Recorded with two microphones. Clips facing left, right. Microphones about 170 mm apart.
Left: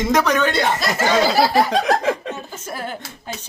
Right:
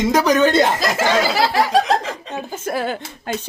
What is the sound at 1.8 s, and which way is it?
Speech, 55° left (ahead or behind).